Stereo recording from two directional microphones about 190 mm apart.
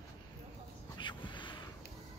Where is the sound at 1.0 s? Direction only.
25° left (ahead or behind).